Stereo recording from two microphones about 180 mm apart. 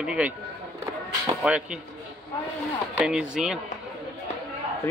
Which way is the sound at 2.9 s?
5° right (ahead or behind).